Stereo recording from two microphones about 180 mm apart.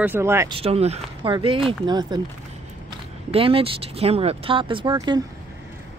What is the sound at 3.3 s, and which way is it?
Speech, 30° right (ahead or behind).